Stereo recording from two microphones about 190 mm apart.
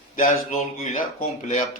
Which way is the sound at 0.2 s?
40° left (ahead or behind).